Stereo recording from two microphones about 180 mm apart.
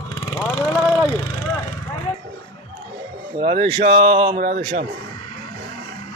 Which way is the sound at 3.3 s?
30° right (ahead or behind).